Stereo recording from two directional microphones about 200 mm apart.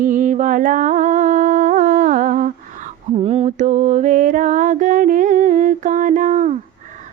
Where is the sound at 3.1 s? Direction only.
30° right (ahead or behind).